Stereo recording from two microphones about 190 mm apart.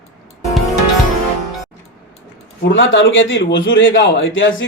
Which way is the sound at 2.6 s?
80° left.